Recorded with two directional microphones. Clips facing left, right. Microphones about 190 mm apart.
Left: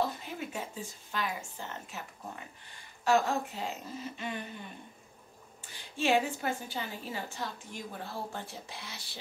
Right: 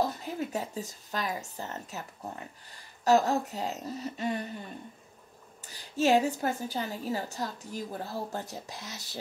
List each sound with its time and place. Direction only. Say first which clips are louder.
0.0 s speech: right 3 dB; 40° right (ahead or behind)
3.1 s a woman's voice: right 4 dB; 40° right (ahead or behind)
5.6 s a woman's voice: right 6 dB; 40° right (ahead or behind)